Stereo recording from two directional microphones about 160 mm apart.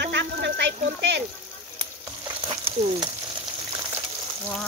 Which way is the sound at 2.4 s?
35° right (ahead or behind).